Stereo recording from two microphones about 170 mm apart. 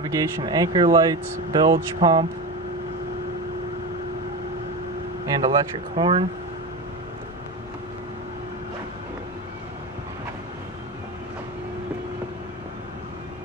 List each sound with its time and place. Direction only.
0.0 s speech: 20° right (ahead or behind)
5.2 s speech: 20° right (ahead or behind)